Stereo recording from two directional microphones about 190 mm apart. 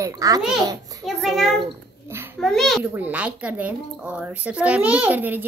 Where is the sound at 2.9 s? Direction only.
10° right (ahead or behind).